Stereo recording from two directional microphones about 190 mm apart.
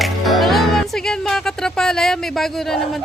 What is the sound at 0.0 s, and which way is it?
Speech, centre (ahead or behind).